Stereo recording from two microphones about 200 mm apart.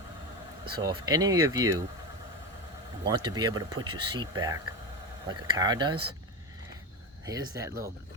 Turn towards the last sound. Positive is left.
turn(degrees=-15)  # may be behind; listen again after turning